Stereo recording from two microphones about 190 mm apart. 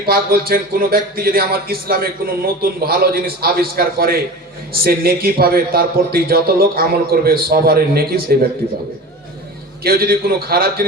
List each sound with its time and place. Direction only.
0.0 s speech: 50° right (ahead or behind)
9.8 s speech: 55° right (ahead or behind)